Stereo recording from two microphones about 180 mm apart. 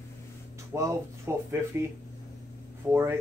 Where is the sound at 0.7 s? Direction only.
15° right (ahead or behind).